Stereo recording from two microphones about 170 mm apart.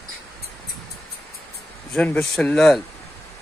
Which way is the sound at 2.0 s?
5° left (ahead or behind).